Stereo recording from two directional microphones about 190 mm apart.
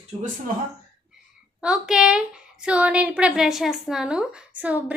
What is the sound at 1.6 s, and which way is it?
A woman's voice, 5° right (ahead or behind).